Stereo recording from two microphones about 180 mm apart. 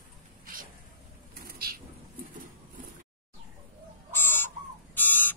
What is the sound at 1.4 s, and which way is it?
Vehicle, 55° right (ahead or behind).